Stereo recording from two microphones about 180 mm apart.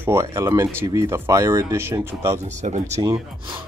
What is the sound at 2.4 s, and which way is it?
Speech, 40° right (ahead or behind).